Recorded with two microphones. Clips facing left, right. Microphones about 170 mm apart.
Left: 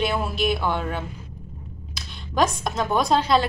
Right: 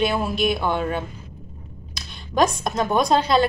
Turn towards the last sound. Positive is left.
turn(degrees=0)  # may be behind; listen again after turning